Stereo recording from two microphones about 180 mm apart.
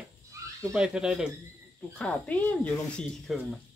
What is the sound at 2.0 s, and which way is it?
Speech, 10° left (ahead or behind).